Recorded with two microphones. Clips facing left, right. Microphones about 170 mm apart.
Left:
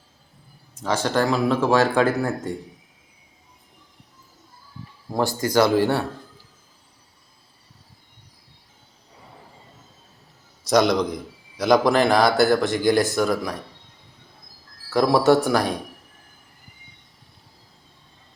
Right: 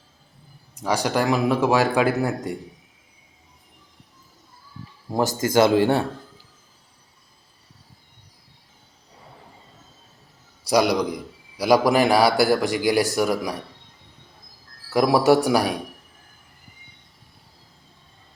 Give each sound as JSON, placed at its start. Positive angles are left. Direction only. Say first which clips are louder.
{"t": 0.8, "sound": "a man's voice", "louder": "even", "side_deg": -10}
{"t": 5.5, "sound": "speech", "louder": "right 1 dB", "side_deg": -20}
{"t": 10.7, "sound": "a man's voice", "louder": "left 1 dB", "side_deg": -10}
{"t": 14.8, "sound": "a man's voice", "louder": "even", "side_deg": -10}